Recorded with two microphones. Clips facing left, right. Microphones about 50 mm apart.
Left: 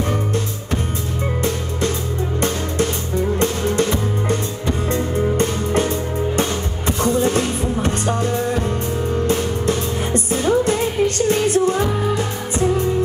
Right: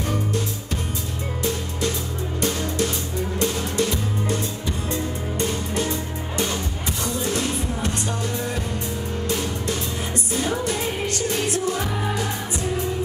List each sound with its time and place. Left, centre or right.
3.3 s music: left